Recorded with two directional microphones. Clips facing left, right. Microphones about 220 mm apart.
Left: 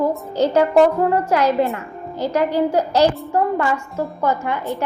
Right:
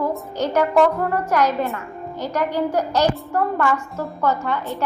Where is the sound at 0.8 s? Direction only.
15° left (ahead or behind).